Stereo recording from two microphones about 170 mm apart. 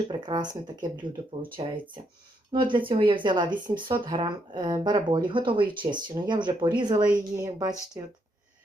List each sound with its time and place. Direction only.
0.1 s speech: 25° right (ahead or behind)